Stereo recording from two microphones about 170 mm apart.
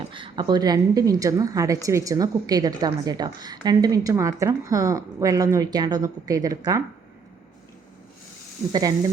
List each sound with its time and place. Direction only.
0.1 s a woman's voice: 30° right (ahead or behind)
8.7 s a woman's voice: 25° right (ahead or behind)